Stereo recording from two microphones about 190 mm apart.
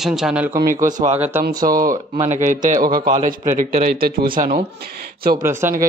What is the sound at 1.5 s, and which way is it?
Speech, 20° right (ahead or behind).